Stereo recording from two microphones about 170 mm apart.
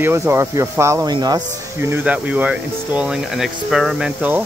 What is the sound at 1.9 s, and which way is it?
Speech, 10° right (ahead or behind).